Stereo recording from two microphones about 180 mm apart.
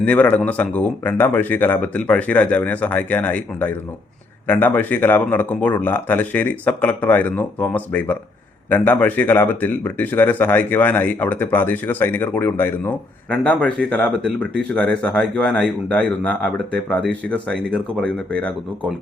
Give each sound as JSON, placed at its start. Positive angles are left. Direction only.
{"t": 0.0, "sound": "speech", "side_deg": 10}